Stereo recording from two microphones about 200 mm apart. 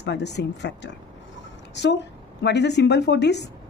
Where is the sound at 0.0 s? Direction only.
60° left (ahead or behind).